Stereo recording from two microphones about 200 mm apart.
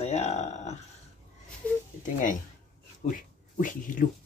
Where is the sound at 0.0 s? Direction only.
35° left (ahead or behind).